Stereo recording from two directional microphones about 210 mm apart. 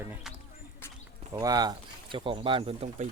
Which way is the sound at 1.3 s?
15° right (ahead or behind).